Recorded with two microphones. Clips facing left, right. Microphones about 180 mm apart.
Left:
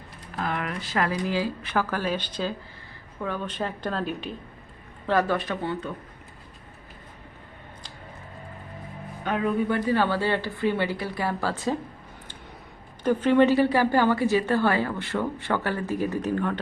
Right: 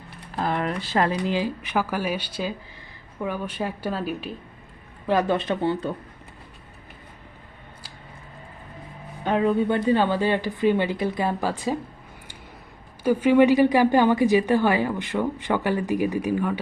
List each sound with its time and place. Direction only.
0.3 s speech: 30° right (ahead or behind)
1.3 s a woman's voice: 20° right (ahead or behind)
5.0 s a woman's voice: 20° right (ahead or behind)
9.2 s a woman's voice: 30° right (ahead or behind); by 11.8 s 15° right (ahead or behind)
13.0 s a woman's voice: 10° right (ahead or behind)